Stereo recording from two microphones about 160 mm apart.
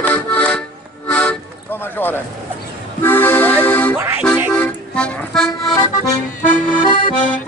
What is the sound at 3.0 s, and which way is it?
Accordion, 15° left (ahead or behind).